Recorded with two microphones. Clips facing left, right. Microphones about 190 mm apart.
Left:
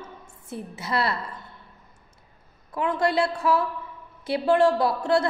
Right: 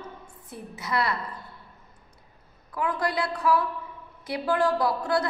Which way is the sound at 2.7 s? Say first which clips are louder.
Left 4 dB; 25° left (ahead or behind).